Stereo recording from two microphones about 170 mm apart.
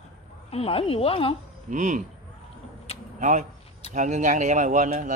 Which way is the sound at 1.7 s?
50° right (ahead or behind).